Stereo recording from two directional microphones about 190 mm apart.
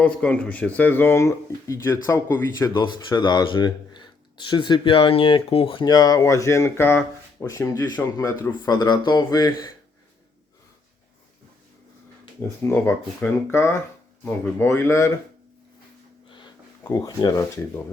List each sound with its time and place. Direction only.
0.0 s speech: 5° left (ahead or behind)
12.6 s speech: 10° left (ahead or behind)
16.8 s speech: 20° left (ahead or behind)